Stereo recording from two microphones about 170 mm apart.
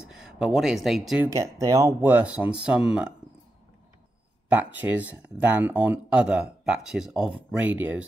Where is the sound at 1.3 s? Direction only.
20° right (ahead or behind).